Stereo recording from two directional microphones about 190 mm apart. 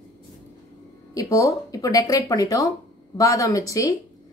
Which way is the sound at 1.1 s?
15° left (ahead or behind).